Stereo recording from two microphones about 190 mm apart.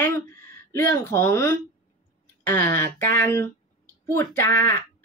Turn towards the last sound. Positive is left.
turn(degrees=10)  # may be behind; listen again after turning